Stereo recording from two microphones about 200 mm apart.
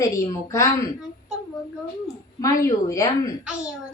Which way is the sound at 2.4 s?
15° left (ahead or behind).